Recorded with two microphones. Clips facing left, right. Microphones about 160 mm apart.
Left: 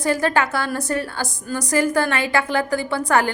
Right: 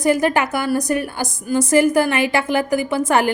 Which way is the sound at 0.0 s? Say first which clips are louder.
Right 3 dB; 20° right (ahead or behind).